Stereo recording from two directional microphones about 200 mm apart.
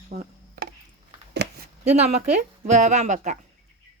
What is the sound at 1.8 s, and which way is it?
Speech, 35° right (ahead or behind).